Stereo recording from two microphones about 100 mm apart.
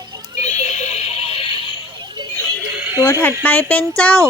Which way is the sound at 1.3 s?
65° left (ahead or behind).